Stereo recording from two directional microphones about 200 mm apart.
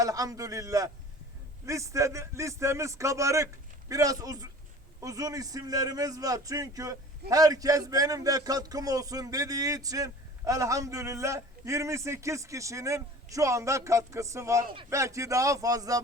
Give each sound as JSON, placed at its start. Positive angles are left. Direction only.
{"t": 0.0, "sound": "a man's voice", "side_deg": -15}